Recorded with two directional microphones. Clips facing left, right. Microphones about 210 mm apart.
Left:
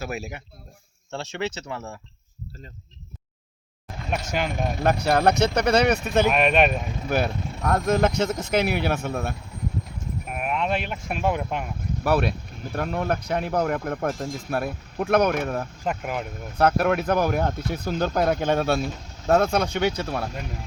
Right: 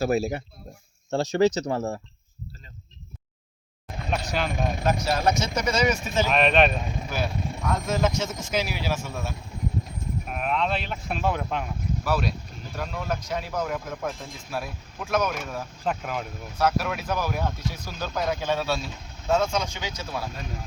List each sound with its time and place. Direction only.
0.0 s speech: 35° right (ahead or behind)
4.8 s speech: 60° left (ahead or behind)
6.3 s speech: 10° left (ahead or behind)
7.1 s speech: 60° left (ahead or behind)
10.2 s a sound: 10° left (ahead or behind)
10.8 s speech: 10° left (ahead or behind)
12.0 s speech: 60° left (ahead or behind)
15.8 s speech: 10° left (ahead or behind)
16.6 s speech: 55° left (ahead or behind)